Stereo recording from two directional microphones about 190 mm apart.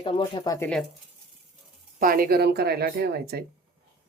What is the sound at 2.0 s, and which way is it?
Speech, 50° right (ahead or behind).